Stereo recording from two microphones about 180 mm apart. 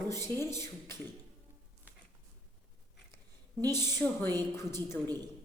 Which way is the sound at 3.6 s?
15° left (ahead or behind).